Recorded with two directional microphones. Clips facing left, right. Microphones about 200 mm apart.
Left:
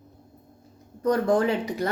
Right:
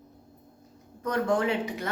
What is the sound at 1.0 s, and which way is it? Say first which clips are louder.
Speech: left 4 dB; 35° left (ahead or behind).